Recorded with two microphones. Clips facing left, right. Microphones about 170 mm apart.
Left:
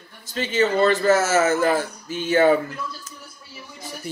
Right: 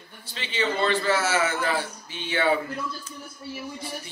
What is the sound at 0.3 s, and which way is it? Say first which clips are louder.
A man's voice: left 7 dB; 45° left (ahead or behind).